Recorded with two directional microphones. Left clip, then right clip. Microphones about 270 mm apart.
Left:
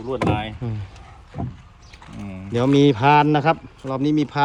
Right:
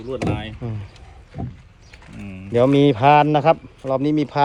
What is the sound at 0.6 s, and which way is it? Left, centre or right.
Speech, centre.